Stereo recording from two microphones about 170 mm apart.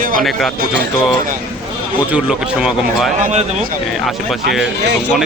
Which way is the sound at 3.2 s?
40° right (ahead or behind).